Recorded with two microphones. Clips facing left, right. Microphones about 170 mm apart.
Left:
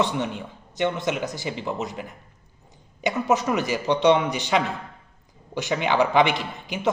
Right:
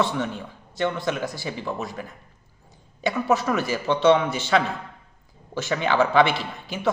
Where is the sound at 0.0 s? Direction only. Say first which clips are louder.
Even; 20° left (ahead or behind).